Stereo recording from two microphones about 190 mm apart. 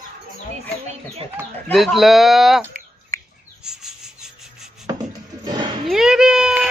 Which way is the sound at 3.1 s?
15° left (ahead or behind).